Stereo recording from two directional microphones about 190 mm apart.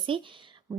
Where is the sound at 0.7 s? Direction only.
15° right (ahead or behind).